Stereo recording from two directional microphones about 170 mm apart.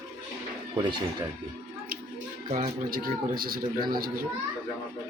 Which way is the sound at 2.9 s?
60° right (ahead or behind).